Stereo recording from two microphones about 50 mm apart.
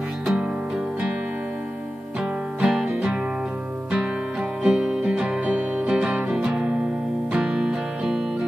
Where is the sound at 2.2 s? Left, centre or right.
Centre.